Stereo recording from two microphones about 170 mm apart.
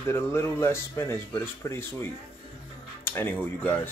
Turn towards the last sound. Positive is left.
turn(degrees=10)  # may be behind; listen again after turning